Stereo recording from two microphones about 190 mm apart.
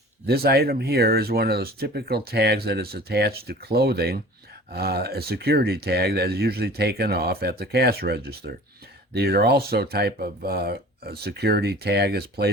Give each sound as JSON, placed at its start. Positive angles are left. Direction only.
{"t": 0.3, "sound": "speech", "side_deg": -55}